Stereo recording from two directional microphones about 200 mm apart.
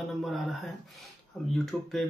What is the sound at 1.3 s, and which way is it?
Speech, centre (ahead or behind).